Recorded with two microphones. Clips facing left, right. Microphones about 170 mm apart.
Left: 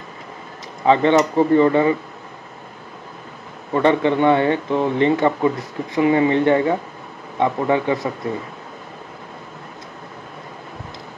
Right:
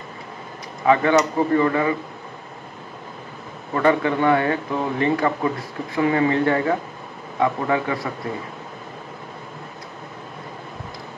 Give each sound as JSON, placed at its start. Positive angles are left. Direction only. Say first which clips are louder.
{"t": 0.8, "sound": "speech", "louder": "left 2 dB", "side_deg": 25}
{"t": 3.7, "sound": "speech", "louder": "left 3 dB", "side_deg": 25}